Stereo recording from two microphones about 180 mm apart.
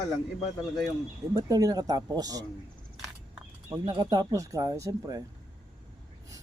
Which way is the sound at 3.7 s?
15° right (ahead or behind).